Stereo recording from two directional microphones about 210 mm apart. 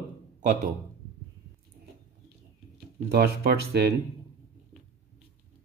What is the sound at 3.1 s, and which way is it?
Speech, 50° right (ahead or behind).